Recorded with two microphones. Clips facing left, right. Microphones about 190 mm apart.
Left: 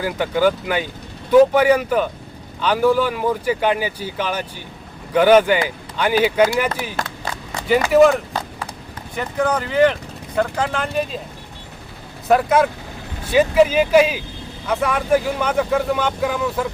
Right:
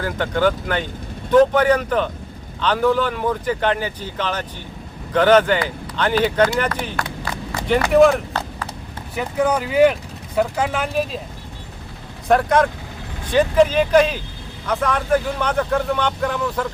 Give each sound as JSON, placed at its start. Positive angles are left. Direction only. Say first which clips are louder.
{"t": 0.0, "sound": "speech", "louder": "left 1 dB", "side_deg": 10}
{"t": 7.0, "sound": "a sound", "louder": "even", "side_deg": 25}
{"t": 7.7, "sound": "speech", "louder": "left 1 dB", "side_deg": 5}
{"t": 12.3, "sound": "speech", "louder": "left 1 dB", "side_deg": 5}